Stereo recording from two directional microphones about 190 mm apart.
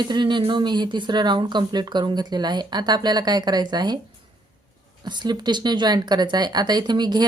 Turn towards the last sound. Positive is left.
turn(degrees=-20)  # may be behind; listen again after turning